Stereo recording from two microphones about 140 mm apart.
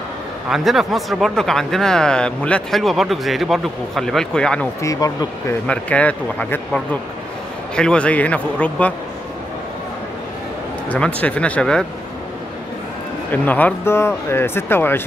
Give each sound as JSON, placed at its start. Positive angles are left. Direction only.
{"t": 0.5, "sound": "speech", "side_deg": 0}
{"t": 4.8, "sound": "speech", "side_deg": 25}
{"t": 5.7, "sound": "speech", "side_deg": 10}
{"t": 10.9, "sound": "speech", "side_deg": 10}
{"t": 13.3, "sound": "speech", "side_deg": 10}